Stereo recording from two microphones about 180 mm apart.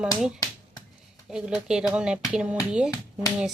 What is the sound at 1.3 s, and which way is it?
Speech, 5° right (ahead or behind).